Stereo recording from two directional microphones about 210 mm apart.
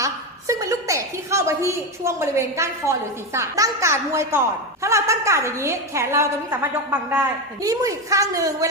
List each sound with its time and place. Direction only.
0.0 s a woman's voice: 15° right (ahead or behind)